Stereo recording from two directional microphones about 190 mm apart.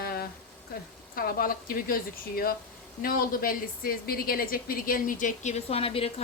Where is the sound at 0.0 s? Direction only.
55° left (ahead or behind).